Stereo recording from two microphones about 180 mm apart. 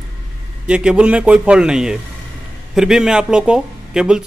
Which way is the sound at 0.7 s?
5° right (ahead or behind).